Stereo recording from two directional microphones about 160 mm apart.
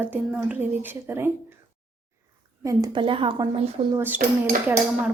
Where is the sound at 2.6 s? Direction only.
25° right (ahead or behind).